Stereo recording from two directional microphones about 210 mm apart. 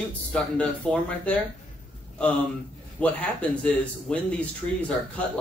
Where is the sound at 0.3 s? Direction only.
5° left (ahead or behind).